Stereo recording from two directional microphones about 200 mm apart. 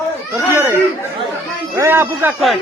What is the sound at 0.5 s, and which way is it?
A man's voice, 10° right (ahead or behind).